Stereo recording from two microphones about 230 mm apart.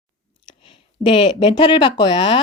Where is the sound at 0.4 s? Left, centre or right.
Left.